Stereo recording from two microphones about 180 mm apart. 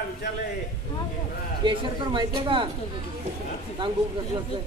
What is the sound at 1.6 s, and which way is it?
Speech, 25° right (ahead or behind).